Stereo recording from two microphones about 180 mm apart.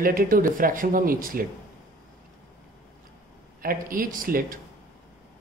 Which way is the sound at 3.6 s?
50° right (ahead or behind).